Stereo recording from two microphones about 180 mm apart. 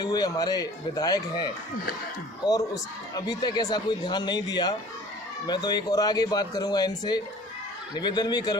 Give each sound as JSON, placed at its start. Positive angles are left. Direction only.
{"t": 0.0, "sound": "speech", "side_deg": 20}